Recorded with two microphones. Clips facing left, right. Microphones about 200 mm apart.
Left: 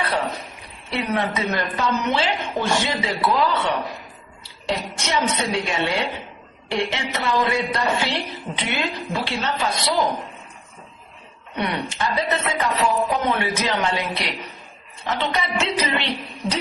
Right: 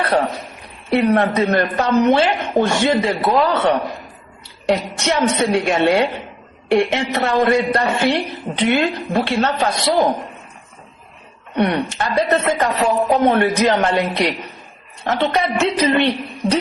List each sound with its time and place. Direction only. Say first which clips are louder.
0.0 s a sound: right 7 dB; 50° right (ahead or behind)
0.9 s a woman's voice: right 9 dB; 55° right (ahead or behind)
11.5 s a woman's voice: right 8 dB; 55° right (ahead or behind)